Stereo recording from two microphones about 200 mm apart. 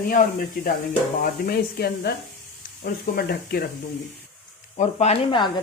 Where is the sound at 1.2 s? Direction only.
50° left (ahead or behind).